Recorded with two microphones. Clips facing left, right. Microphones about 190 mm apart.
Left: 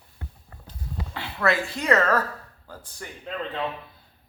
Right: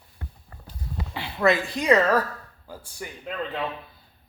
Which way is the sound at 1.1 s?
15° right (ahead or behind).